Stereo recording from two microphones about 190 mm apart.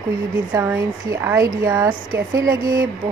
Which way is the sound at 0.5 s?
15° right (ahead or behind).